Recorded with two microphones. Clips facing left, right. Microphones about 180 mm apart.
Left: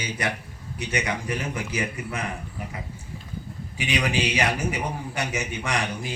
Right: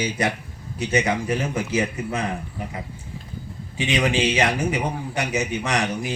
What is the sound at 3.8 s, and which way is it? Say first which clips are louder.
A man's voice: right 4 dB; 25° right (ahead or behind).